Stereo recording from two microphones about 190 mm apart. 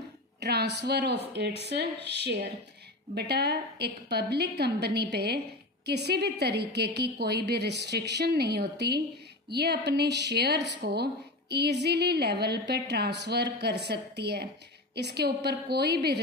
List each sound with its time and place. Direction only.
0.4 s a woman's voice: 60° right (ahead or behind)